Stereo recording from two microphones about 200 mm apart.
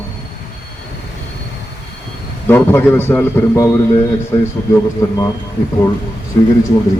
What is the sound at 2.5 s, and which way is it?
A man's voice, 10° left (ahead or behind).